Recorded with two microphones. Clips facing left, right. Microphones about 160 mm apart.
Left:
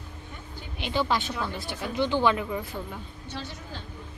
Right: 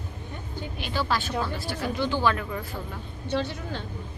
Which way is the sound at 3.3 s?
65° right (ahead or behind).